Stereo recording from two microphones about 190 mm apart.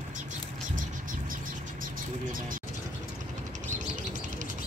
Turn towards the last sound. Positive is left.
turn(degrees=-40)  # may be behind; listen again after turning